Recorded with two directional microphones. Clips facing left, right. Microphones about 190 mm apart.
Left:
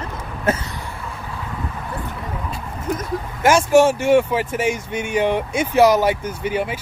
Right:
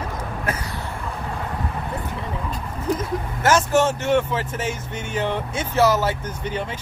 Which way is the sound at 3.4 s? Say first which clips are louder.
Left 5 dB; 10° left (ahead or behind).